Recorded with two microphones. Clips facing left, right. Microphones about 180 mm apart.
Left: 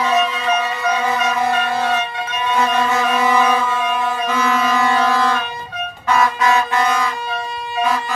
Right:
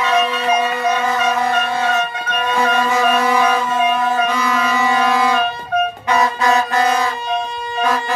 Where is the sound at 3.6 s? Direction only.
40° right (ahead or behind).